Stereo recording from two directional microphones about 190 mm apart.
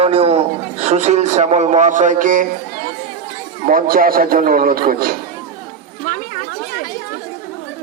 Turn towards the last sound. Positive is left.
turn(degrees=55)  # may be behind; listen again after turning